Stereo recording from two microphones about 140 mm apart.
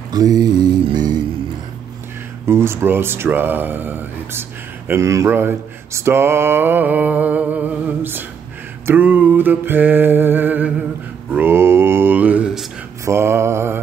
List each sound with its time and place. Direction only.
0.1 s mantra: 30° right (ahead or behind)
2.4 s speech: 20° right (ahead or behind)
11.3 s mantra: 15° right (ahead or behind)
13.0 s mantra: 20° right (ahead or behind)